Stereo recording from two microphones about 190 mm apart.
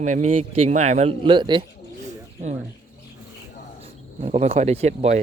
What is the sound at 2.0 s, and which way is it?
Bird, 40° right (ahead or behind).